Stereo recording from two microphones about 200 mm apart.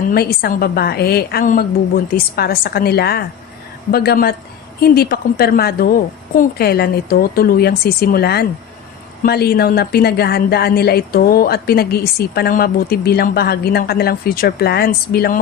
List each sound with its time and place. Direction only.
0.1 s a woman's voice: 50° left (ahead or behind)